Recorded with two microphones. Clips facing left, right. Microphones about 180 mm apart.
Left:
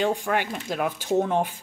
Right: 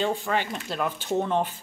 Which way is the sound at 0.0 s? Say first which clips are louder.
Left 2 dB; 15° left (ahead or behind).